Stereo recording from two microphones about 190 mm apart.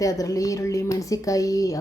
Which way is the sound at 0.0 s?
20° left (ahead or behind).